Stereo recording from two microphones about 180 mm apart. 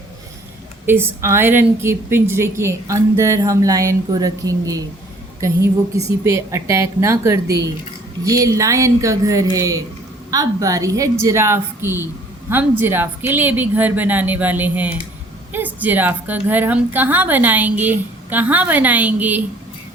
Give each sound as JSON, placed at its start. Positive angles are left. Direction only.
{"t": 0.9, "sound": "a woman's voice", "side_deg": -15}
{"t": 6.2, "sound": "a woman's voice", "side_deg": -15}